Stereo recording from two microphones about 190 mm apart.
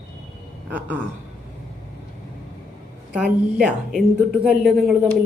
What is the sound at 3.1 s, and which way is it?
A woman's voice, 5° right (ahead or behind).